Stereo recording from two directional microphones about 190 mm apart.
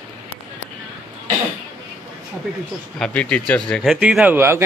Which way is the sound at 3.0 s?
5° left (ahead or behind).